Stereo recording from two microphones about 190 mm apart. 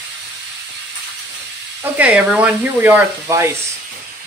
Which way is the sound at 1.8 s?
5° right (ahead or behind).